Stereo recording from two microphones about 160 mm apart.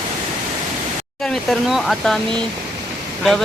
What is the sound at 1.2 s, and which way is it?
Speech, centre (ahead or behind).